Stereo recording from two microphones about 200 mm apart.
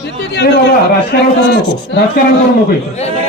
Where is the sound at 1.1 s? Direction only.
50° left (ahead or behind).